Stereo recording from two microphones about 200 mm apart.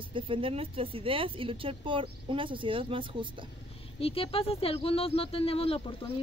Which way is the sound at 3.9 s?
30° left (ahead or behind).